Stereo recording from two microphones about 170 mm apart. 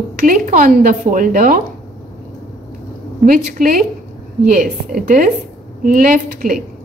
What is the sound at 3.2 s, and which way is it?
A woman's voice, 55° right (ahead or behind).